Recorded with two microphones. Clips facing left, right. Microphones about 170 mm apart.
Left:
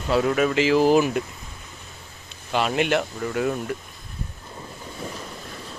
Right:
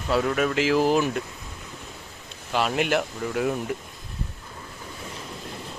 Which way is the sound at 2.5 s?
Centre (ahead or behind).